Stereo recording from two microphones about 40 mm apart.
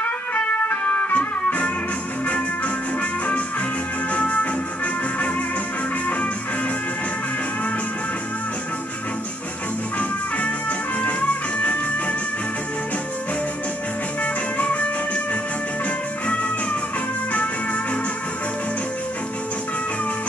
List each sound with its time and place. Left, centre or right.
0.0 s music: left
3.0 s music: left
9.9 s music: left
14.2 s music: left